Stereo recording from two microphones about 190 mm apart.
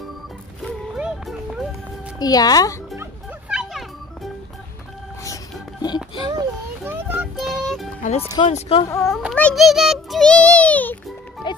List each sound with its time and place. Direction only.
0.6 s a sound: 5° right (ahead or behind)
2.1 s a child's voice: 20° left (ahead or behind)
3.0 s music: 5° right (ahead or behind)
5.2 s a sound: 20° left (ahead or behind)
6.2 s a sound: 15° right (ahead or behind)
7.3 s music: centre (ahead or behind)
8.5 s speech: 30° left (ahead or behind)
8.8 s a child's voice: 15° left (ahead or behind)
11.4 s music: 25° left (ahead or behind)